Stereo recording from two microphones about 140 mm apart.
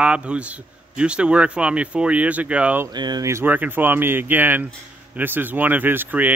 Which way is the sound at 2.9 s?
30° right (ahead or behind).